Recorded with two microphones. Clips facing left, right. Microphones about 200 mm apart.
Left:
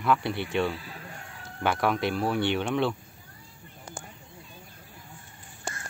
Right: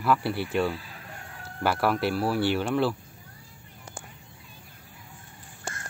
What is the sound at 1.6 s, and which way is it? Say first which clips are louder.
Speech: right 1 dB; 5° right (ahead or behind).